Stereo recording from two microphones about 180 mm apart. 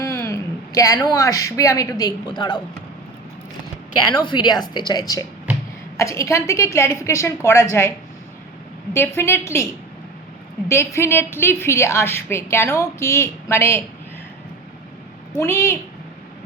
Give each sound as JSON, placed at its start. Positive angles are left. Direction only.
{"t": 0.0, "sound": "a sound", "side_deg": 15}
{"t": 1.0, "sound": "speech", "side_deg": 20}
{"t": 4.1, "sound": "a woman's voice", "side_deg": 25}
{"t": 10.7, "sound": "a woman's voice", "side_deg": 15}
{"t": 15.4, "sound": "a woman's voice", "side_deg": 15}